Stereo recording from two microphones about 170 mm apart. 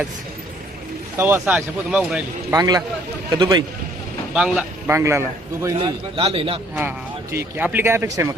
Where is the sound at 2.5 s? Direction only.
20° right (ahead or behind).